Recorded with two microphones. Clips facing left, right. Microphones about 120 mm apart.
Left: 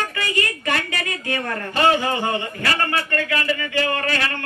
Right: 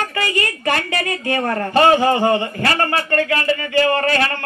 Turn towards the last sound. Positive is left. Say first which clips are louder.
# right 6 dB
turn(degrees=-40)  # may be behind; listen again after turning